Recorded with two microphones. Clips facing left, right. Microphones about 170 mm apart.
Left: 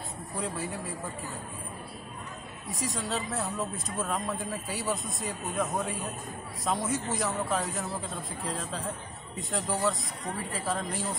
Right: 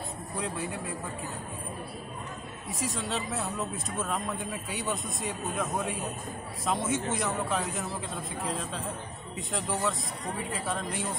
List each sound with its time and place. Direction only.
0.4 s speech: centre (ahead or behind)
2.7 s speech: centre (ahead or behind)